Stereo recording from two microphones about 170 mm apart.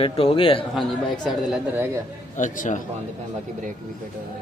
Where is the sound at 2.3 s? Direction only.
50° left (ahead or behind).